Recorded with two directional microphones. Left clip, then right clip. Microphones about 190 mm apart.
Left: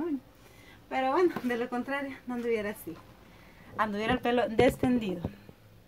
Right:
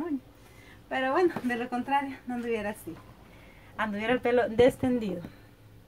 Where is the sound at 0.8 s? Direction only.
Centre (ahead or behind).